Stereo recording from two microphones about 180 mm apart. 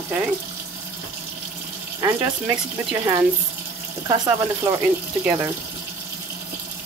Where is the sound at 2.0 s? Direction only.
20° right (ahead or behind).